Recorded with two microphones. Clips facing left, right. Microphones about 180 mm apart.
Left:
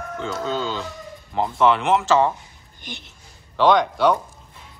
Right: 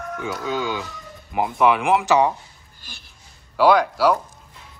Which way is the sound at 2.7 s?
20° left (ahead or behind).